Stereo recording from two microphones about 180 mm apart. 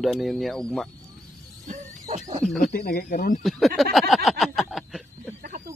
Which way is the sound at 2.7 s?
55° left (ahead or behind).